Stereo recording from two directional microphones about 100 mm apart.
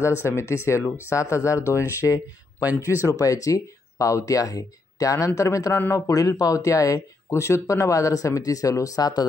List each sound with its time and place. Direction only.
0.0 s speech: 25° left (ahead or behind)
2.6 s speech: 20° right (ahead or behind)
3.1 s speech: 35° left (ahead or behind)